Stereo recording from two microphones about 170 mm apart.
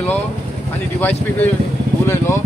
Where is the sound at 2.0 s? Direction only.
15° left (ahead or behind).